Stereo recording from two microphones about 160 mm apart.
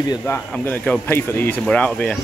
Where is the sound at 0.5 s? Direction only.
10° left (ahead or behind).